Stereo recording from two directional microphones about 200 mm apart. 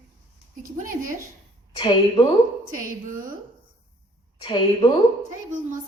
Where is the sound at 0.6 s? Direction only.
40° right (ahead or behind).